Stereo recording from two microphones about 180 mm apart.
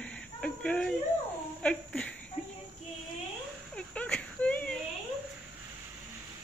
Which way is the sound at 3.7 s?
5° left (ahead or behind).